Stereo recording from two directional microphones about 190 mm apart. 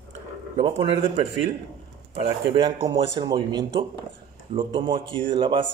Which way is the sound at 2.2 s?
20° right (ahead or behind).